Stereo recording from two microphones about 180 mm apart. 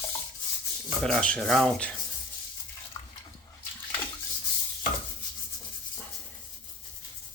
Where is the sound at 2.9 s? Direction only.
20° left (ahead or behind).